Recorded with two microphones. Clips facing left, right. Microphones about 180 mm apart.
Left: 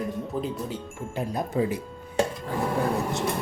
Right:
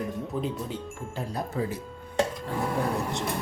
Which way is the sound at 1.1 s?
15° left (ahead or behind).